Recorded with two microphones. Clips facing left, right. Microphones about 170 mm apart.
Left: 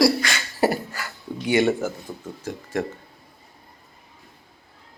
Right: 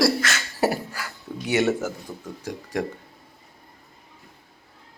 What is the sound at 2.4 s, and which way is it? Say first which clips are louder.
Speech: left 1 dB; 15° right (ahead or behind).